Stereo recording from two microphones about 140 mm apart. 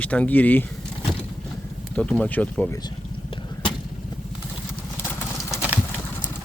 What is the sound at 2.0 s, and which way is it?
Speech, 10° left (ahead or behind).